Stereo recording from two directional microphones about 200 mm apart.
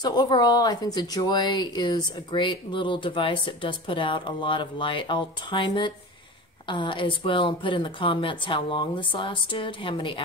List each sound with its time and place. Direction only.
0.0 s a woman's voice: 20° left (ahead or behind)